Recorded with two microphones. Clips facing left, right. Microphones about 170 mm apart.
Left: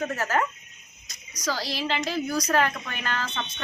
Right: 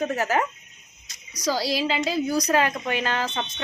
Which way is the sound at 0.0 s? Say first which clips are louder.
Right 2 dB; 15° right (ahead or behind).